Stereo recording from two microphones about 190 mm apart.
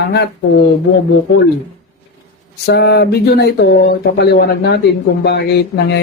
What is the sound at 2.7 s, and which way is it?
Speech, 55° left (ahead or behind).